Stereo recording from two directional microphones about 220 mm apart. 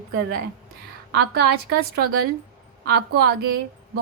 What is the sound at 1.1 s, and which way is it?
A woman's voice, 50° right (ahead or behind).